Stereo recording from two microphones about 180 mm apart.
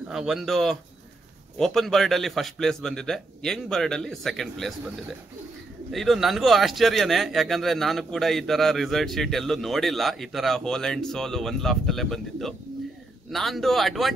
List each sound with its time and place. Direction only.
0.1 s speech: centre (ahead or behind)
5.9 s speech: centre (ahead or behind)